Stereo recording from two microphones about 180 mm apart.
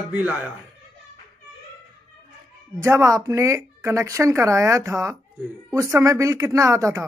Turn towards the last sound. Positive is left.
turn(degrees=-15)  # may be behind; listen again after turning